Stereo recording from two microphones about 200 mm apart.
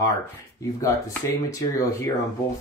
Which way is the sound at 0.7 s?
15° left (ahead or behind).